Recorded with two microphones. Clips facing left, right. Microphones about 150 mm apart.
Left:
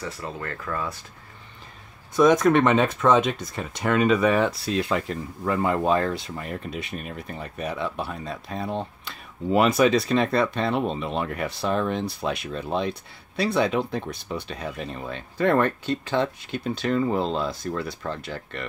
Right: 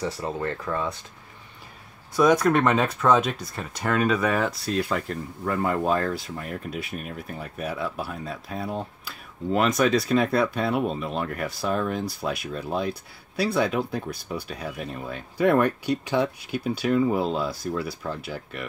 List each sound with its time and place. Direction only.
0.2 s speech: 25° right (ahead or behind)
2.1 s speech: 5° right (ahead or behind)